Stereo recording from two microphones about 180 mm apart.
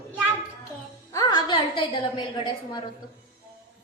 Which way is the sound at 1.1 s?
25° left (ahead or behind).